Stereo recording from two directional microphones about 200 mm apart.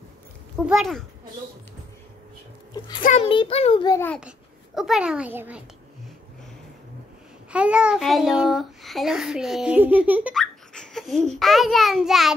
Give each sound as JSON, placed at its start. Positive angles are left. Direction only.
{"t": 0.7, "sound": "a child's voice", "side_deg": 0}
{"t": 3.0, "sound": "a child's voice", "side_deg": 35}
{"t": 4.7, "sound": "a child's voice", "side_deg": 0}
{"t": 7.5, "sound": "a child's voice", "side_deg": -5}
{"t": 10.3, "sound": "a child's voice", "side_deg": 5}